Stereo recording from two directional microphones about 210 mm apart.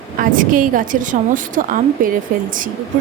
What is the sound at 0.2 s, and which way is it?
A woman's voice, 40° right (ahead or behind).